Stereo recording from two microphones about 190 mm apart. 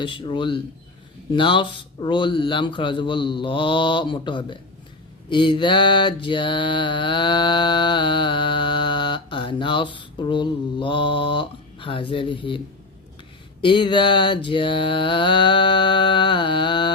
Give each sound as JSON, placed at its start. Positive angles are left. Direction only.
{"t": 0.0, "sound": "mantra", "side_deg": 25}